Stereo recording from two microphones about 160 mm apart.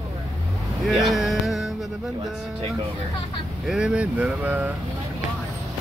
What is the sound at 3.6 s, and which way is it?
Speech, 5° right (ahead or behind).